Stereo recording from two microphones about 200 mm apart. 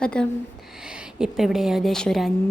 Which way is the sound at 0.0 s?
5° left (ahead or behind).